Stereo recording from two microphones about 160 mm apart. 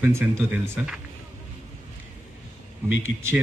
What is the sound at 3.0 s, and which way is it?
Speech, 15° right (ahead or behind).